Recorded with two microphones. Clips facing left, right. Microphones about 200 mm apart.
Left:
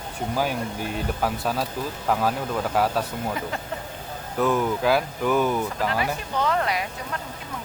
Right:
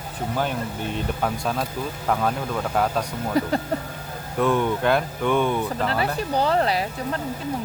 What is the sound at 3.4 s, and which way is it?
Speech, 35° right (ahead or behind).